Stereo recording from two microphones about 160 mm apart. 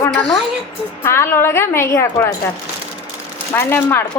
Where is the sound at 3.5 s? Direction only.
15° left (ahead or behind).